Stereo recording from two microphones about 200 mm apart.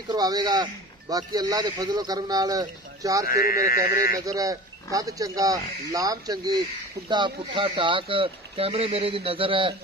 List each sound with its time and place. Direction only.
0.1 s speech: 20° right (ahead or behind)
3.3 s speech: 50° left (ahead or behind)
4.2 s speech: 15° right (ahead or behind)